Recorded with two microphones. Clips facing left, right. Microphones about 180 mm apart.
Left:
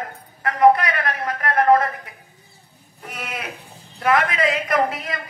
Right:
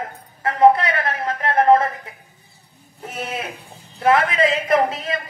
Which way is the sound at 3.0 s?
25° right (ahead or behind).